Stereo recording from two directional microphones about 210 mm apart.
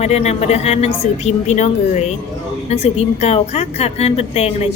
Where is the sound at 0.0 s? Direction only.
30° left (ahead or behind).